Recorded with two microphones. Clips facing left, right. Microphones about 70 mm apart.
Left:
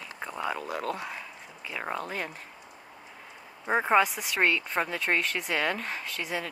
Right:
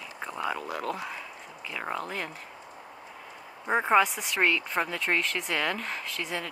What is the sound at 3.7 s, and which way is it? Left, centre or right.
Speech, centre.